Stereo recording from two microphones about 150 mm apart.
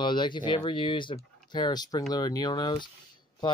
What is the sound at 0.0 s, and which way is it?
Speech, 30° left (ahead or behind).